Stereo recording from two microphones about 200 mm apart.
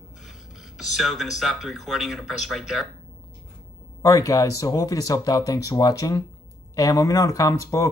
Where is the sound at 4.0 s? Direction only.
15° left (ahead or behind).